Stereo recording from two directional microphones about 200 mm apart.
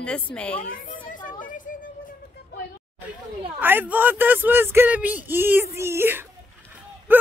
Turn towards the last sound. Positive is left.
turn(degrees=-10)  # may be behind; listen again after turning